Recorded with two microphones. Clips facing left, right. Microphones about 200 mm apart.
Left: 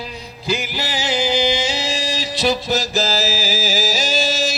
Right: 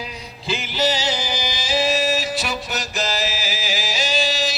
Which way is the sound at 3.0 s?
35° left (ahead or behind).